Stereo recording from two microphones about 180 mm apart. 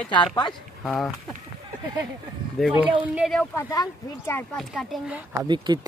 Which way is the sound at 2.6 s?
5° right (ahead or behind).